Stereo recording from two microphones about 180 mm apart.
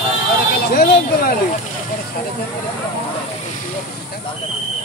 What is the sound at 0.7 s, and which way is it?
Speech, 55° left (ahead or behind).